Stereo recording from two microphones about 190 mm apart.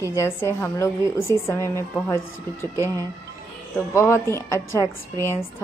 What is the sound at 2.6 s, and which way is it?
Speech, 20° right (ahead or behind).